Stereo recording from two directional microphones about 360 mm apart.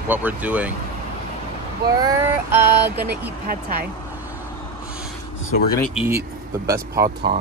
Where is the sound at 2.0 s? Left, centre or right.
Centre.